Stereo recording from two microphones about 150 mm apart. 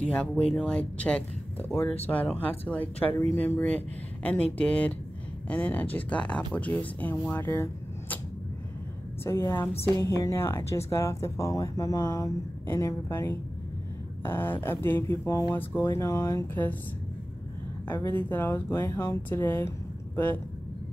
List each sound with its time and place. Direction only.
0.0 s speech: 10° left (ahead or behind)
9.2 s a woman's voice: 20° left (ahead or behind)
17.8 s speech: 15° left (ahead or behind)